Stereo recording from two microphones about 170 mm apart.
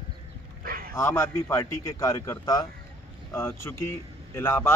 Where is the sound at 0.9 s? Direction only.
15° left (ahead or behind).